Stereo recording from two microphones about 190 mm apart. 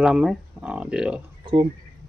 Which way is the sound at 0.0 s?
5° right (ahead or behind).